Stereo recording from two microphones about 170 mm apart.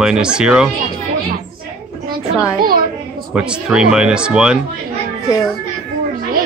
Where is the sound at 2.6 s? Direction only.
60° right (ahead or behind).